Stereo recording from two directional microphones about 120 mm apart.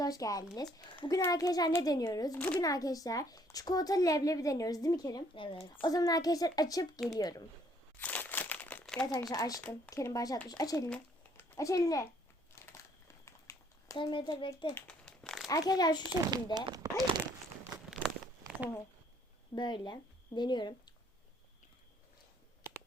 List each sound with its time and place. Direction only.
0.0 s speech: 30° left (ahead or behind)
5.3 s a child's voice: 45° left (ahead or behind)
5.8 s a child's voice: 30° left (ahead or behind)
7.9 s crumpling: 15° left (ahead or behind)
9.3 s a child's voice: 30° left (ahead or behind)
13.2 s a sound: 25° left (ahead or behind)
13.9 s a child's voice: 40° left (ahead or behind)
14.8 s crumpling: 10° left (ahead or behind)
15.4 s speech: 30° left (ahead or behind)
16.1 s speech: 30° right (ahead or behind)
16.7 s zipper: 35° right (ahead or behind)
17.9 s crumpling: 5° right (ahead or behind)
19.5 s speech: 40° left (ahead or behind)